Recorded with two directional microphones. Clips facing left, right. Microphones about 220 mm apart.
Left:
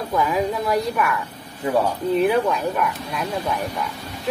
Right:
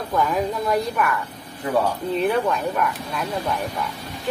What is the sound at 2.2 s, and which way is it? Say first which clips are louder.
A woman's voice: left 1 dB; 5° left (ahead or behind).